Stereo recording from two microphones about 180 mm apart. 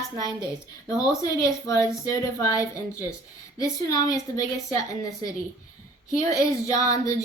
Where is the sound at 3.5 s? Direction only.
20° left (ahead or behind).